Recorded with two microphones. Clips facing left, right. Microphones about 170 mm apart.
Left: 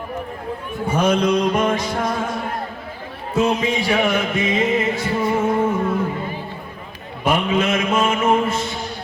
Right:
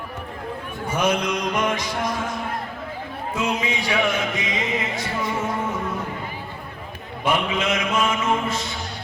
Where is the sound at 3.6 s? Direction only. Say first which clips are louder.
Left 5 dB; 50° left (ahead or behind).